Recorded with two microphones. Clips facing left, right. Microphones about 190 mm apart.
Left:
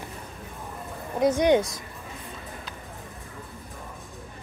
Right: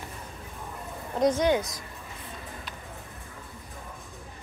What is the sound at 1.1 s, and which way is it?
Speech, 10° left (ahead or behind).